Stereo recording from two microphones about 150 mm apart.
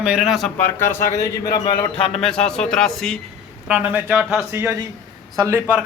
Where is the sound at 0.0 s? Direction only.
5° right (ahead or behind).